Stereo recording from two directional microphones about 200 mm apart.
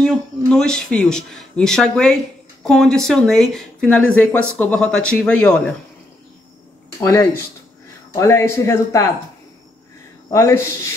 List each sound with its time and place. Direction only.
0.0 s speech: 5° left (ahead or behind)
7.0 s speech: 15° left (ahead or behind)
10.3 s speech: 15° left (ahead or behind)